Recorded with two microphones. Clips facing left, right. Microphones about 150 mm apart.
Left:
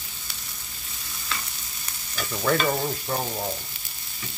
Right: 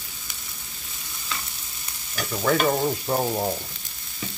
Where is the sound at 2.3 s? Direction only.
5° right (ahead or behind).